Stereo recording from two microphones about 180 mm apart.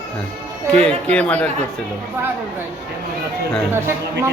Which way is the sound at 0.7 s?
5° left (ahead or behind).